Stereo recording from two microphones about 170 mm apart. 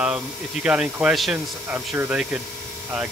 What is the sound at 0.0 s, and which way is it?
Speech, 5° right (ahead or behind).